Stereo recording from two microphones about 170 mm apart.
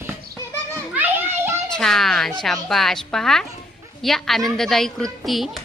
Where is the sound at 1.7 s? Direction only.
5° left (ahead or behind).